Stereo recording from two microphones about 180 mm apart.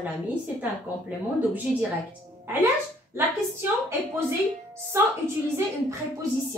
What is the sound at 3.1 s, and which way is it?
A woman's voice, 15° right (ahead or behind).